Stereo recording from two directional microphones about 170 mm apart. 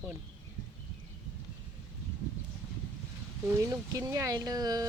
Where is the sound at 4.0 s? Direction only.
20° right (ahead or behind).